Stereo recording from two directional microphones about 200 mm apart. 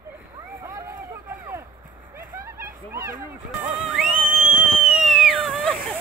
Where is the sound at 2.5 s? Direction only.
10° right (ahead or behind).